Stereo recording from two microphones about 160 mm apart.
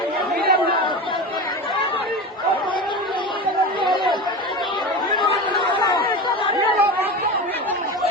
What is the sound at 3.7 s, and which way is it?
Chatter, 30° right (ahead or behind).